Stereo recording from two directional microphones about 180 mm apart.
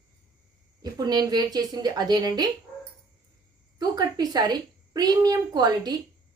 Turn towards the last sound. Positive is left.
turn(degrees=-20)  # may be behind; listen again after turning